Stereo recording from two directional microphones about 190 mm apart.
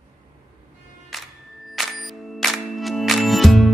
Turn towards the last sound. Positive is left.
turn(degrees=0)  # may be behind; listen again after turning